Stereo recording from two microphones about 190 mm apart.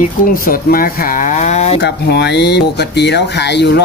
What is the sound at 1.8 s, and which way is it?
Speech, 60° left (ahead or behind).